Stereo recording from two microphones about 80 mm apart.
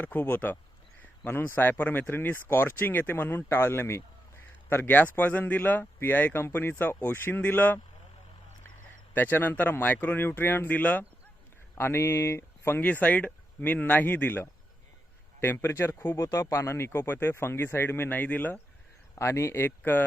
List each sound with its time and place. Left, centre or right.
0.0 s speech: left
9.1 s speech: left
11.7 s speech: left
12.8 s speech: centre
19.1 s speech: left